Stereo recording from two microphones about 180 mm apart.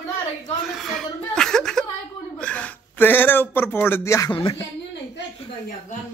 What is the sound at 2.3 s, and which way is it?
Speech, 5° left (ahead or behind).